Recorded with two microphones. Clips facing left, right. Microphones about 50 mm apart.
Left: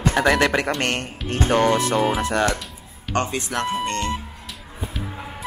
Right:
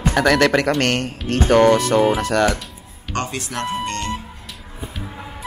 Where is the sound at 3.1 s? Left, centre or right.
Left.